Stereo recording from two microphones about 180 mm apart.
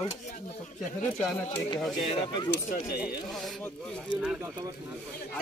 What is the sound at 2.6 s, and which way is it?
Speech, 55° left (ahead or behind).